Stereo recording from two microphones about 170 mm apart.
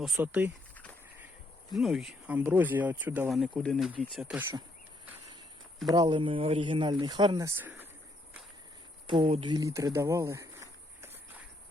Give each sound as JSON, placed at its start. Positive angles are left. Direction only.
{"t": 0.2, "sound": "speech", "side_deg": -10}
{"t": 1.7, "sound": "speech", "side_deg": 0}
{"t": 5.9, "sound": "speech", "side_deg": -25}
{"t": 9.0, "sound": "speech", "side_deg": -30}